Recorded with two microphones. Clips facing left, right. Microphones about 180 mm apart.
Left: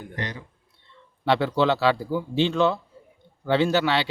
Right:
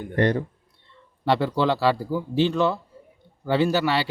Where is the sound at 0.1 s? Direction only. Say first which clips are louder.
Right 14 dB; 55° right (ahead or behind).